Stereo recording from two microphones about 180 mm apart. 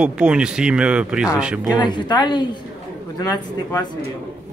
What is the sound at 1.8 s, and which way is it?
Speech, 25° left (ahead or behind).